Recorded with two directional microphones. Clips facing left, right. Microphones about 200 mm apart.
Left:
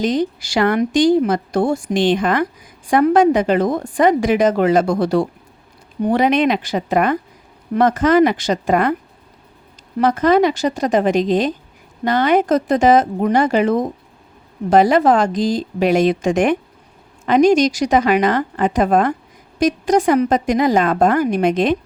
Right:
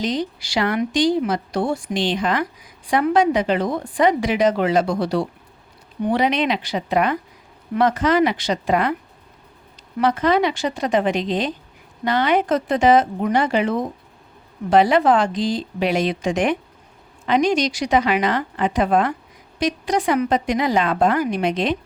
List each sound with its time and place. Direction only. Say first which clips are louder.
0.0 s a woman's voice: left 5 dB; 50° left (ahead or behind)
10.0 s a woman's voice: left 4 dB; 45° left (ahead or behind)